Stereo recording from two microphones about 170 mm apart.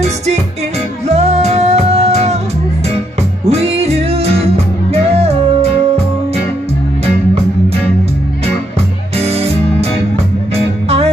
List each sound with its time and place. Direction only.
1.0 s music: 40° right (ahead or behind)
3.4 s music: 40° right (ahead or behind)
9.2 s music: 40° right (ahead or behind)